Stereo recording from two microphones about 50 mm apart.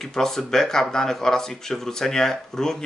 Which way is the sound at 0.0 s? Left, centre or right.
Centre.